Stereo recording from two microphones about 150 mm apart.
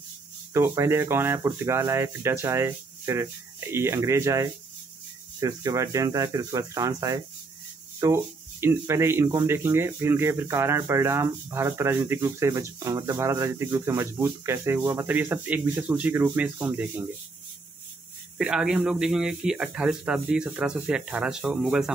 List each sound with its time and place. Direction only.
0.5 s speech: 20° right (ahead or behind)
18.4 s speech: 5° right (ahead or behind)